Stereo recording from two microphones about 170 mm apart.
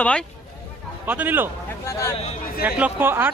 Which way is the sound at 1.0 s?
10° right (ahead or behind).